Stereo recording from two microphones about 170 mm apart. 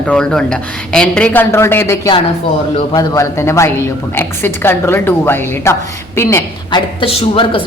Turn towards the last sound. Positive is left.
turn(degrees=30)  # may be behind; listen again after turning